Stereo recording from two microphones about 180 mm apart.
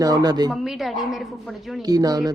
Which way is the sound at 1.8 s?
20° right (ahead or behind).